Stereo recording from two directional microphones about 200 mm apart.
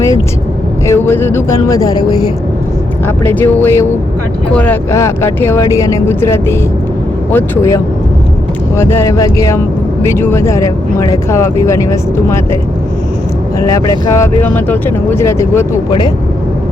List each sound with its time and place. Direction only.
0.9 s speech: 10° left (ahead or behind)
3.2 s speech: 10° left (ahead or behind)
13.6 s speech: 15° left (ahead or behind)
15.9 s speech: 25° left (ahead or behind)